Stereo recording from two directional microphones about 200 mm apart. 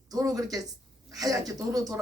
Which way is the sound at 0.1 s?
20° right (ahead or behind).